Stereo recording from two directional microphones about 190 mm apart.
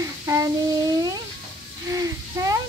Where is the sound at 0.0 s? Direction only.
15° right (ahead or behind).